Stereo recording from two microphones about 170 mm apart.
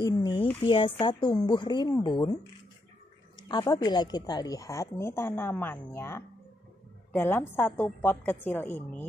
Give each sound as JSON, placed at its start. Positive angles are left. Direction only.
{"t": 0.0, "sound": "a woman's voice", "side_deg": 25}
{"t": 3.4, "sound": "a woman's voice", "side_deg": 25}